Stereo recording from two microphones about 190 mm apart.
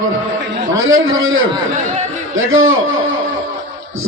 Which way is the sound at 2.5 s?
90° right.